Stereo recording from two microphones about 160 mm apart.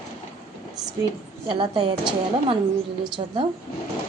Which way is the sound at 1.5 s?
35° right (ahead or behind).